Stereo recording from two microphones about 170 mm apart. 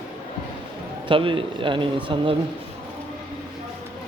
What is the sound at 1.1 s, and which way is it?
Speech, 30° right (ahead or behind).